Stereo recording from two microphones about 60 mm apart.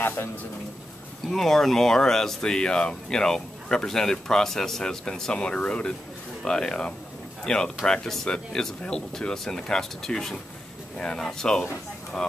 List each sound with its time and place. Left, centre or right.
0.0 s speech: left
1.3 s speech: centre